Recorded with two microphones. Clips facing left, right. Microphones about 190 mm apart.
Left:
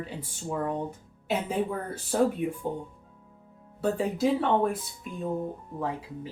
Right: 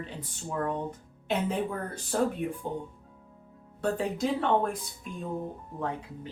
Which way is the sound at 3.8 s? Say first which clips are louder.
Left 2 dB; 5° left (ahead or behind).